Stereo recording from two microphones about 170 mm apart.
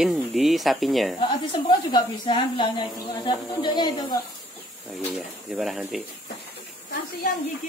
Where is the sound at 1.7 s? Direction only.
25° left (ahead or behind).